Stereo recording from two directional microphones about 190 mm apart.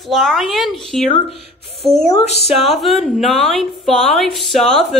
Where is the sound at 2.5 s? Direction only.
Centre (ahead or behind).